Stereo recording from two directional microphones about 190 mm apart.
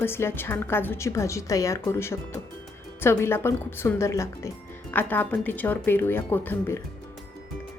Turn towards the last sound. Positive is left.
turn(degrees=10)  # may be behind; listen again after turning